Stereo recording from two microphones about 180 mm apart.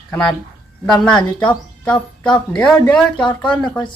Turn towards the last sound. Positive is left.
turn(degrees=5)  # may be behind; listen again after turning